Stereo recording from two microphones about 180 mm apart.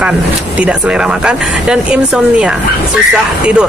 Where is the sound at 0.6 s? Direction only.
5° right (ahead or behind).